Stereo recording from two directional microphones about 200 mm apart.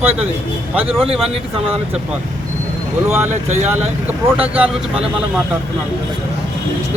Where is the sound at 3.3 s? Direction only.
35° right (ahead or behind).